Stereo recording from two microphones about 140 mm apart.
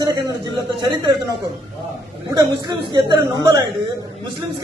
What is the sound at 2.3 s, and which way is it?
Speech, 35° right (ahead or behind).